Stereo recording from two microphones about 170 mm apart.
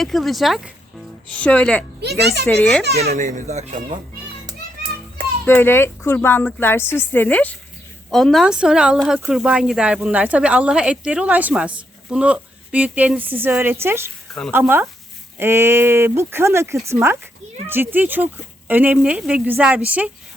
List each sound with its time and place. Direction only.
0.0 s speech: centre (ahead or behind)
2.0 s a child's voice: 75° right (ahead or behind)
2.5 s speech: 10° left (ahead or behind)
2.8 s a child's voice: 65° right (ahead or behind)
3.2 s speech: 45° right (ahead or behind)
5.5 s a woman's voice: 15° left (ahead or behind); by 20.1 s 10° right (ahead or behind)